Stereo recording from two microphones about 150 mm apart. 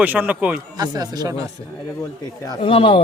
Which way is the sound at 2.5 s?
35° left (ahead or behind).